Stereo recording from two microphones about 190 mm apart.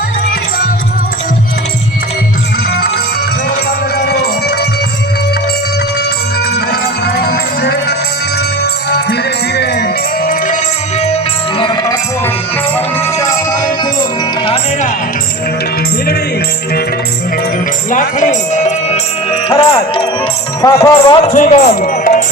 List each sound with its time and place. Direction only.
3.9 s music: 55° left (ahead or behind)
7.0 s music: 55° left (ahead or behind)
9.6 s music: 55° left (ahead or behind)
11.0 s music: 30° left (ahead or behind)
14.4 s music: 30° left (ahead or behind)
17.9 s music: 40° left (ahead or behind)
20.6 s speech: 20° left (ahead or behind)
21.2 s speech: 40° left (ahead or behind)